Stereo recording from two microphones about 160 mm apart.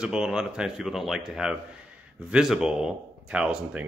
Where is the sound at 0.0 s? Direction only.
5° right (ahead or behind).